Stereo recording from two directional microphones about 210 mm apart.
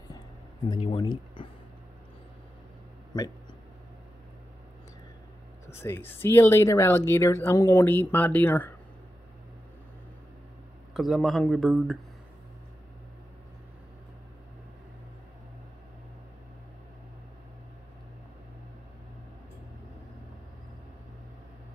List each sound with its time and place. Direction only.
0.7 s speech: 25° left (ahead or behind)
5.7 s speech: 10° left (ahead or behind)
10.9 s speech: centre (ahead or behind)